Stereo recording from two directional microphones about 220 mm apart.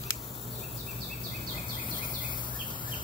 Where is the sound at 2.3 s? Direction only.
20° left (ahead or behind).